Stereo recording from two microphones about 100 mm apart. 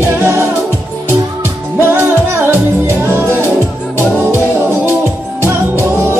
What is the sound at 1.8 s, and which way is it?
Music, 25° right (ahead or behind).